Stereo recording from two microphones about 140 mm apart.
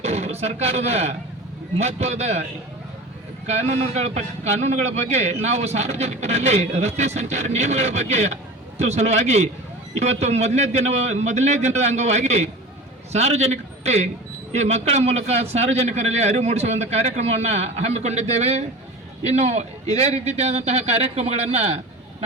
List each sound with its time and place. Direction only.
0.0 s a man's voice: 50° right (ahead or behind)